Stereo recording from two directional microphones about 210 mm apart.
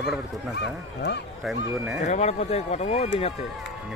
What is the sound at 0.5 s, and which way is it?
Speech, 55° left (ahead or behind).